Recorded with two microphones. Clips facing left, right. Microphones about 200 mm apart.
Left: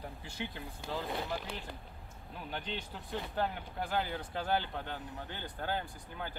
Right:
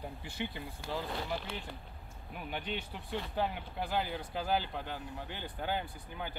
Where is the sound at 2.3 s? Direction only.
10° right (ahead or behind).